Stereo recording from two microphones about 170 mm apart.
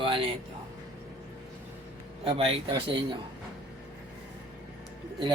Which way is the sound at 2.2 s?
35° right (ahead or behind).